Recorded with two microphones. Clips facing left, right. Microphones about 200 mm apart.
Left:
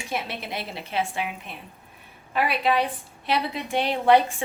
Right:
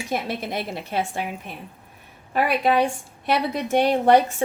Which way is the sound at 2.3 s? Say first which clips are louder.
Right 3 dB; 45° right (ahead or behind).